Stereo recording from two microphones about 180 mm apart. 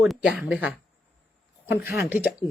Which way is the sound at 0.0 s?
5° right (ahead or behind).